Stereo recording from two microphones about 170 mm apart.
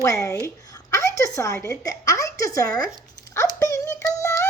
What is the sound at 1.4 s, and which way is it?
A woman's voice, 15° left (ahead or behind).